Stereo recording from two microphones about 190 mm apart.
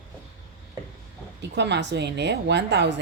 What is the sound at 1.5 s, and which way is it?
Speech, 65° right (ahead or behind).